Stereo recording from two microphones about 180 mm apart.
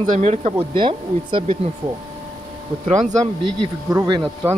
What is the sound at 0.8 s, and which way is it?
Speech, 30° right (ahead or behind).